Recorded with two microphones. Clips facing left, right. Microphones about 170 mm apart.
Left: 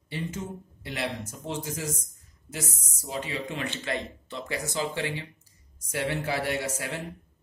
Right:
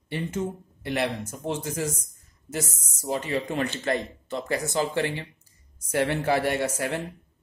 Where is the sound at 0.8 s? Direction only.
55° right (ahead or behind).